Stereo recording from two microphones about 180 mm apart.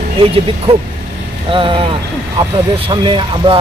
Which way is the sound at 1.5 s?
30° right (ahead or behind).